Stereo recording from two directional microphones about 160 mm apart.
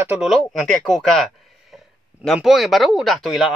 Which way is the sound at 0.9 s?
Centre (ahead or behind).